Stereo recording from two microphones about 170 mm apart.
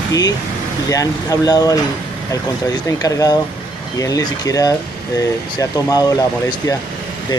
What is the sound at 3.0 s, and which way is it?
Speech, 20° left (ahead or behind).